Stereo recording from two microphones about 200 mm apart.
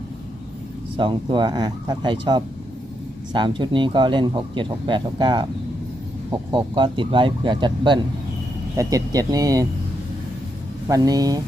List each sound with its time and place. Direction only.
0.9 s speech: 25° right (ahead or behind)
6.5 s speech: 25° right (ahead or behind)
10.8 s speech: 20° right (ahead or behind)